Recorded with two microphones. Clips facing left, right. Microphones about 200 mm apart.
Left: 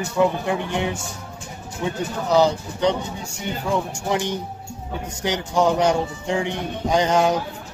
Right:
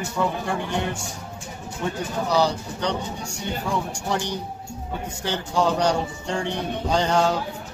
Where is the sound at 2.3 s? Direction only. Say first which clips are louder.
Left 5 dB; 20° left (ahead or behind).